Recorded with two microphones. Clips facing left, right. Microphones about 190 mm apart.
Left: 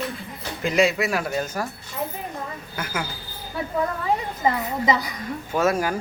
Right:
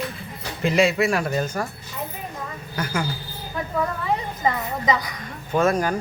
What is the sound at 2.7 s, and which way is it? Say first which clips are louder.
Speech: right 4 dB; 5° left (ahead or behind).